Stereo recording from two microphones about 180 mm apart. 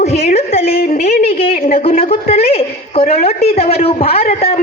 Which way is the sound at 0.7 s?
60° left (ahead or behind).